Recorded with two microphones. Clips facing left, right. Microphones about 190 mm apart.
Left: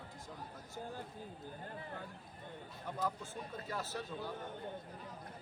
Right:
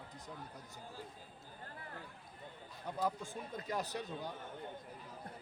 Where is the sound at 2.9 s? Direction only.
15° right (ahead or behind).